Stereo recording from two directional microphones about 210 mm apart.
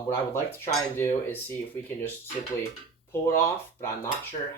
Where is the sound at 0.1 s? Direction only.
15° left (ahead or behind).